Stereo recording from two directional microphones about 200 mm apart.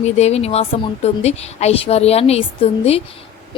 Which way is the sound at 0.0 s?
35° left (ahead or behind).